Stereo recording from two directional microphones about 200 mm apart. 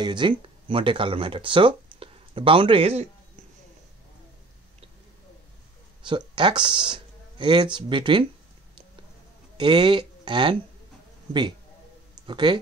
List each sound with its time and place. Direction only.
0.0 s speech: 20° right (ahead or behind)
6.0 s speech: 25° right (ahead or behind)
9.6 s speech: 25° right (ahead or behind)
12.3 s speech: 25° right (ahead or behind)